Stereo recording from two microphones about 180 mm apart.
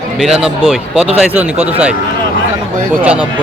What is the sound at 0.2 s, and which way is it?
A man's voice, 5° right (ahead or behind).